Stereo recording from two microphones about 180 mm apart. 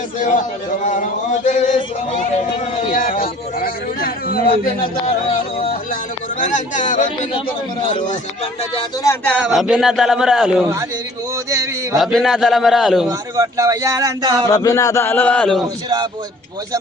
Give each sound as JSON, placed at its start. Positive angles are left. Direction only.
{"t": 0.2, "sound": "speech", "side_deg": 45}
{"t": 2.9, "sound": "a sound", "side_deg": 50}
{"t": 6.4, "sound": "speech", "side_deg": 45}
{"t": 9.4, "sound": "a man's voice", "side_deg": -5}
{"t": 11.5, "sound": "a sound", "side_deg": -15}
{"t": 11.9, "sound": "a man's voice", "side_deg": 0}
{"t": 13.1, "sound": "speech", "side_deg": -20}
{"t": 14.5, "sound": "a man's voice", "side_deg": 20}
{"t": 15.6, "sound": "speech", "side_deg": -20}